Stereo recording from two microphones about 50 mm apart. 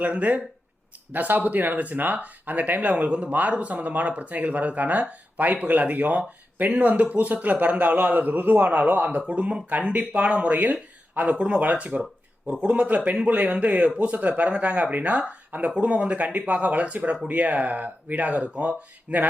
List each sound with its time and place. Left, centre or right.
0.0 s speech: right